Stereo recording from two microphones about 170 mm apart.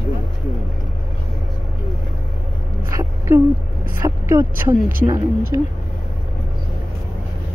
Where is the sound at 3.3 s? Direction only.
15° right (ahead or behind).